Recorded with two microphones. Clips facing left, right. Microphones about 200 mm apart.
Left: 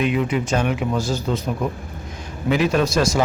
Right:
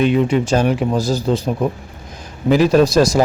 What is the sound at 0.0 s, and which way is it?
Speech, 30° right (ahead or behind).